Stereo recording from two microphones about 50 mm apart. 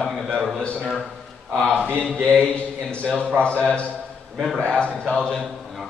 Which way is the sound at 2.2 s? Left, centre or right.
Centre.